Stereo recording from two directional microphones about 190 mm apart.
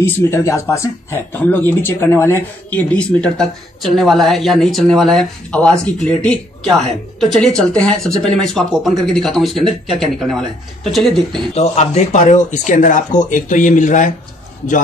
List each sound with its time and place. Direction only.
0.0 s speech: 15° left (ahead or behind)
10.8 s speech: centre (ahead or behind)
11.5 s speech: 35° left (ahead or behind)